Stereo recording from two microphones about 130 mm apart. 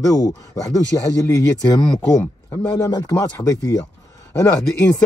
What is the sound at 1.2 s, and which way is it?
Speech, 25° left (ahead or behind).